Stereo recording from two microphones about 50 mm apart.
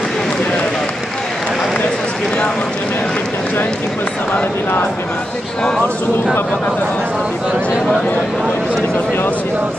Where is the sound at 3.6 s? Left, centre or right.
Left.